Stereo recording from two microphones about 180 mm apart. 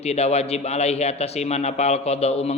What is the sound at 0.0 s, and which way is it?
A man's voice, 35° left (ahead or behind).